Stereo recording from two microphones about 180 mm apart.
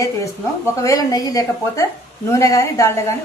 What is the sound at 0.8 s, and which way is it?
A woman's voice, 20° left (ahead or behind).